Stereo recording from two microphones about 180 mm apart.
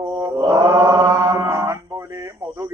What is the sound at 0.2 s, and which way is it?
Mantra, 20° right (ahead or behind).